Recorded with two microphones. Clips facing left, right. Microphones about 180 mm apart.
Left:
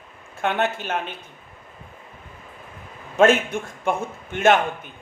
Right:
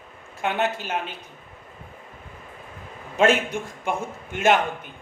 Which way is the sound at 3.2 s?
55° left (ahead or behind).